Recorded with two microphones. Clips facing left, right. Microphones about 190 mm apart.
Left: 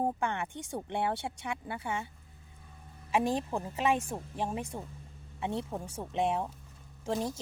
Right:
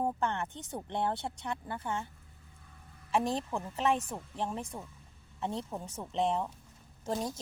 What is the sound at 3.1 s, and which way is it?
Speech, 10° left (ahead or behind).